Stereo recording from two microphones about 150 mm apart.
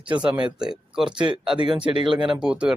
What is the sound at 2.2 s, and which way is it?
Speech, 5° right (ahead or behind).